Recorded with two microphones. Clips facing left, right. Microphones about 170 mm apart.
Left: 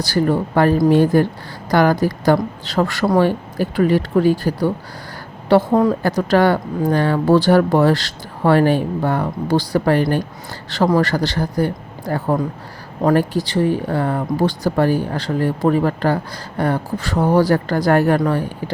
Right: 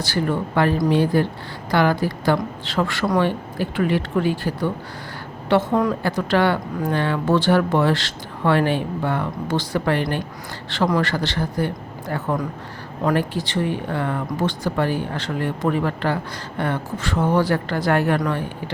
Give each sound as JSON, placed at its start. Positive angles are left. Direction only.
{"t": 0.0, "sound": "a woman's voice", "side_deg": 40}